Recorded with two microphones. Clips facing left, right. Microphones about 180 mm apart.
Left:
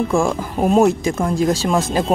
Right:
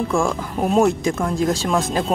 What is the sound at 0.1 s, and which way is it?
Speech, 15° left (ahead or behind).